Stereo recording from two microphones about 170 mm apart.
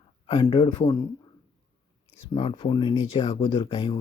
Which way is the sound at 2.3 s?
30° left (ahead or behind).